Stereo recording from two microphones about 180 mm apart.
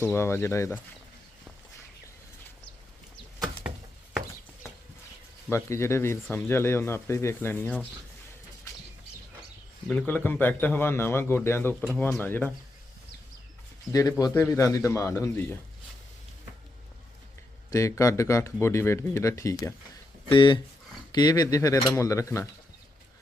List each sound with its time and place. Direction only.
0.0 s speech: 15° left (ahead or behind)
5.5 s speech: 15° left (ahead or behind)
9.9 s speech: 10° left (ahead or behind)
13.9 s speech: 15° left (ahead or behind)
17.7 s speech: 15° left (ahead or behind)